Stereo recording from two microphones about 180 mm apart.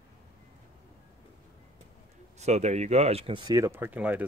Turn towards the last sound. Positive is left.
turn(degrees=-10)  # may be behind; listen again after turning